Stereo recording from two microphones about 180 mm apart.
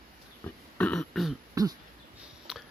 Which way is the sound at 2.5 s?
5° right (ahead or behind).